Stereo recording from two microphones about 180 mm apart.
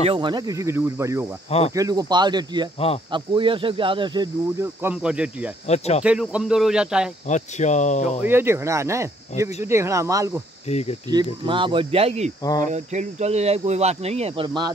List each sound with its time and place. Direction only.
0.0 s speech: 30° right (ahead or behind)
4.8 s speech: 5° right (ahead or behind)
5.7 s speech: 35° left (ahead or behind)
6.0 s speech: 5° right (ahead or behind)
7.2 s speech: 40° left (ahead or behind)
8.2 s speech: 10° right (ahead or behind)
10.7 s speech: 35° left (ahead or behind)
11.4 s speech: 30° right (ahead or behind)